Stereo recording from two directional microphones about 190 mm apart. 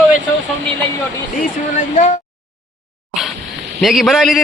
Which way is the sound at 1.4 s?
40° left (ahead or behind).